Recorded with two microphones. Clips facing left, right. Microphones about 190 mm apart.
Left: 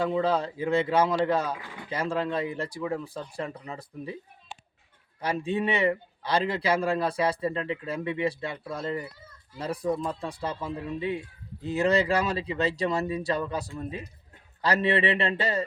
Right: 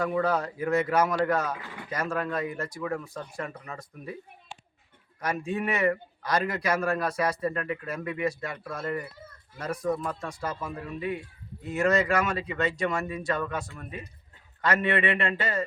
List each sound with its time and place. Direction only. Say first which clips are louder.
0.0 s speech: left 1 dB; 25° left (ahead or behind)
5.2 s speech: left 2 dB; 30° left (ahead or behind)